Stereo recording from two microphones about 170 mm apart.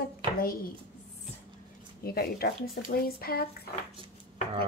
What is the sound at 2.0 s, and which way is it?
Speech, 65° left (ahead or behind).